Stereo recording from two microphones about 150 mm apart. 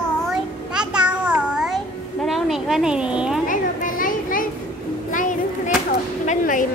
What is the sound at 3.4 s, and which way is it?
Children playing, 65° left (ahead or behind).